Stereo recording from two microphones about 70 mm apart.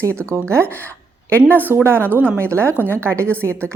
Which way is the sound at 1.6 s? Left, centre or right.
Right.